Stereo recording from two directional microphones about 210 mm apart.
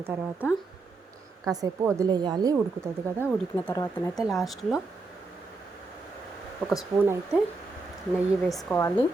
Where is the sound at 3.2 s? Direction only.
10° left (ahead or behind).